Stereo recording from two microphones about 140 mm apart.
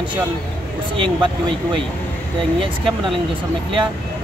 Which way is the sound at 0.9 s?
35° right (ahead or behind).